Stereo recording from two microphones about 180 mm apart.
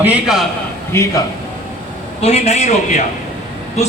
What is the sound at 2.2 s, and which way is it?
Speech, 35° left (ahead or behind).